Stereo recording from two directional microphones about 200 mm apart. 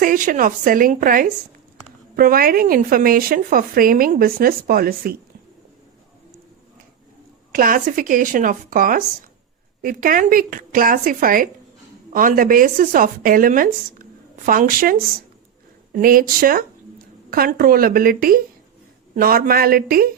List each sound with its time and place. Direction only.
0.0 s speech: 40° right (ahead or behind)
7.5 s speech: 45° right (ahead or behind)